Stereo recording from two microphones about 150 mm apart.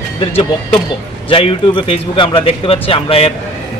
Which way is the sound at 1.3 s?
40° left (ahead or behind).